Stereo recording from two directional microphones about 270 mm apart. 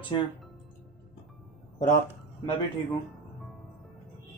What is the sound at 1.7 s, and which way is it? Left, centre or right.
Speech, left.